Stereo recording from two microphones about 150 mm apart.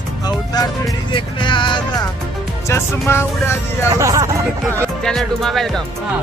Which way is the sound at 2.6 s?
15° left (ahead or behind).